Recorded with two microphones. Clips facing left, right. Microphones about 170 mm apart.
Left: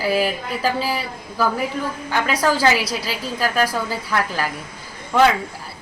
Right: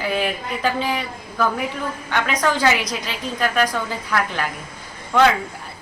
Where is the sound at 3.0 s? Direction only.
35° left (ahead or behind).